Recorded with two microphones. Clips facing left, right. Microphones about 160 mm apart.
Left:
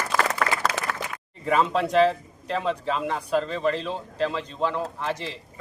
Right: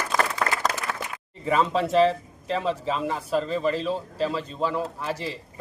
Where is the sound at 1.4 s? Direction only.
Centre (ahead or behind).